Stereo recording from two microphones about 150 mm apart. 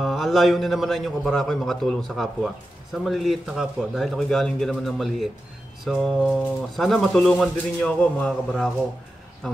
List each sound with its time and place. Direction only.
0.0 s a man's voice: centre (ahead or behind)